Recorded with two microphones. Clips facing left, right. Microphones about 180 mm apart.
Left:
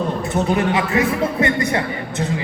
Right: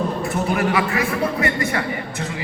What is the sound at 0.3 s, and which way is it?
A man's voice, 20° left (ahead or behind).